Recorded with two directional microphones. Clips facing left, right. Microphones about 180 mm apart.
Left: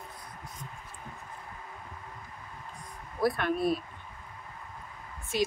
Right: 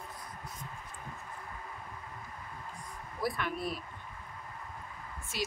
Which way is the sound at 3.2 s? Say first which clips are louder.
Left 7 dB; 60° left (ahead or behind).